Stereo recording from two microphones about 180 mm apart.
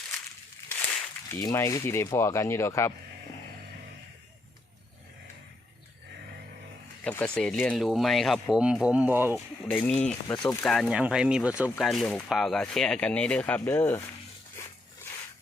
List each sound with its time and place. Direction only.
0.7 s a sound: 10° left (ahead or behind)
1.4 s speech: 15° left (ahead or behind)
7.0 s speech: 5° left (ahead or behind); by 9.4 s 10° right (ahead or behind)
9.6 s speech: 10° left (ahead or behind)
14.6 s dog: 15° left (ahead or behind)